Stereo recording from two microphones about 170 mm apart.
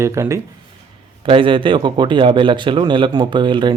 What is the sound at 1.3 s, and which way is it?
A man's voice, 30° right (ahead or behind).